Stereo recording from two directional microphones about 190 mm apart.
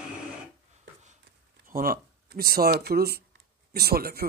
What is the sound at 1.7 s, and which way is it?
A man's voice, 50° right (ahead or behind).